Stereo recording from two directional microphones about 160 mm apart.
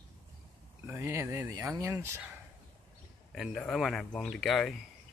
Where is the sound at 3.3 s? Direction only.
Centre (ahead or behind).